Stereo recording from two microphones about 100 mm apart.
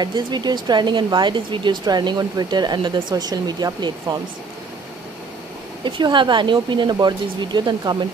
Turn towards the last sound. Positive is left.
turn(degrees=-45)  # may be behind; listen again after turning